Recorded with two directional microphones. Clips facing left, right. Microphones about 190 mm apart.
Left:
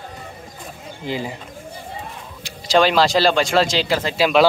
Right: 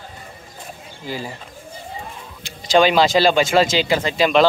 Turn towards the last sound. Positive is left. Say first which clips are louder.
# even
turn(degrees=5)  # may be behind; listen again after turning